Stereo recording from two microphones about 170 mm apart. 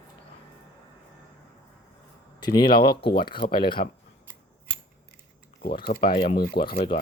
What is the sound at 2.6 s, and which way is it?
Speech, 60° left (ahead or behind).